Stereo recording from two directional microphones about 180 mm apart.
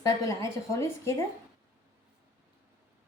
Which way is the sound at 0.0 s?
15° left (ahead or behind).